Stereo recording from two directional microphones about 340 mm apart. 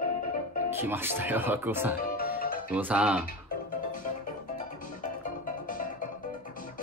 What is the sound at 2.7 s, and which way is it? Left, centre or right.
Speech, centre.